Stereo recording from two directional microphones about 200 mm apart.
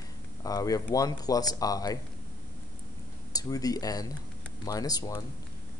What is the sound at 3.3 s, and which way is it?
Speech, 20° left (ahead or behind).